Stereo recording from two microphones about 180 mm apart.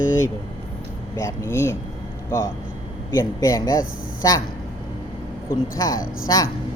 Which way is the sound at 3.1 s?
20° left (ahead or behind).